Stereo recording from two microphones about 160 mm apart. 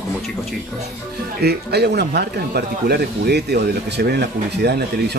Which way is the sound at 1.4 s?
90° right.